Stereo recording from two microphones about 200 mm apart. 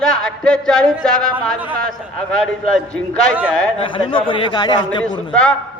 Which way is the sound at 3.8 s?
25° left (ahead or behind).